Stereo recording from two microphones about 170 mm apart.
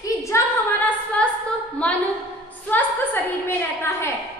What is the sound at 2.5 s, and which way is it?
A woman's voice, 10° left (ahead or behind).